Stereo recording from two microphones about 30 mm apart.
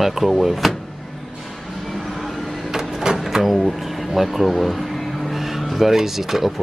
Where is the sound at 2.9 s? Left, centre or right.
Right.